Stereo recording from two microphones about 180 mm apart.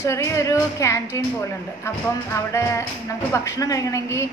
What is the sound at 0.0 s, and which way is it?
A woman's voice, 15° left (ahead or behind).